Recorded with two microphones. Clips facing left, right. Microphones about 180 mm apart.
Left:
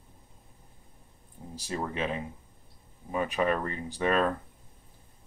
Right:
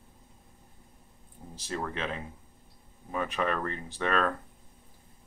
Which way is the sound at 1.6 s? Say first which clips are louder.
Left 2 dB; 15° left (ahead or behind).